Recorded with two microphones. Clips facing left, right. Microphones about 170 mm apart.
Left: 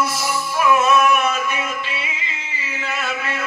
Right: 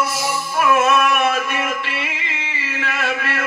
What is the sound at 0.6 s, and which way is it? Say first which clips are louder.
Music: even; 55° right (ahead or behind).